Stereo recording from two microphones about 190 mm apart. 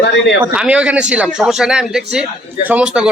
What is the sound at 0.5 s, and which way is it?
Speech, 5° right (ahead or behind).